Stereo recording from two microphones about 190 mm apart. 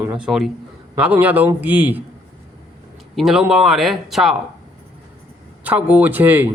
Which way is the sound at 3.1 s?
Centre (ahead or behind).